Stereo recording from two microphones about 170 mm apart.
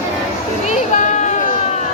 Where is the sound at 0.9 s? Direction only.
45° left (ahead or behind).